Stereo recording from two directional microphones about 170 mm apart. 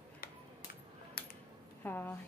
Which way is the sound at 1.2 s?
60° left (ahead or behind).